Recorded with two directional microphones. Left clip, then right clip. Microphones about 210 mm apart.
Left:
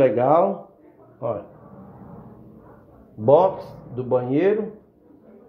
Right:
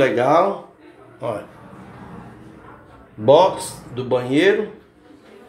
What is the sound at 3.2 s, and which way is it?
A man's voice, 5° left (ahead or behind).